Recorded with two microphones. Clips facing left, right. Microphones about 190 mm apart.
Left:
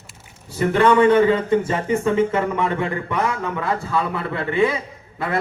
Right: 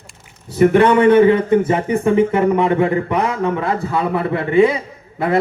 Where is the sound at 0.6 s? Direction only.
20° right (ahead or behind).